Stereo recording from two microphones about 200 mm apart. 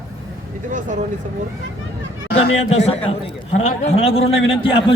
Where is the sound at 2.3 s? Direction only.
30° left (ahead or behind).